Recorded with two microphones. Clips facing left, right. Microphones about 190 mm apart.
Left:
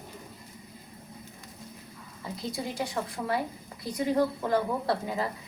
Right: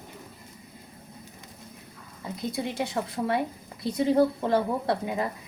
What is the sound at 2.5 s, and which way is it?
Speech, 25° right (ahead or behind).